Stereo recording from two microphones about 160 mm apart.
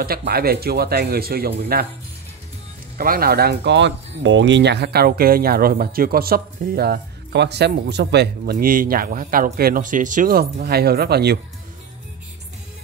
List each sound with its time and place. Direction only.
0.0 s speech: 70° right (ahead or behind)
3.0 s speech: 65° right (ahead or behind); by 11.3 s 90° right